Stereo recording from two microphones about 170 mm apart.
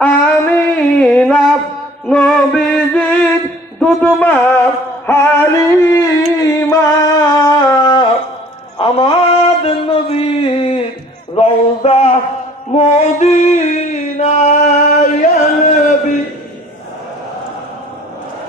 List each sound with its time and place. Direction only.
0.0 s music: 5° left (ahead or behind)
6.4 s a sound: 20° left (ahead or behind); by 12.2 s 35° left (ahead or behind)
12.7 s music: 40° left (ahead or behind)